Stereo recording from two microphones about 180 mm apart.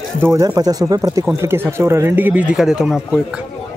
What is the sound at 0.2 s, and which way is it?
Speech, 15° right (ahead or behind).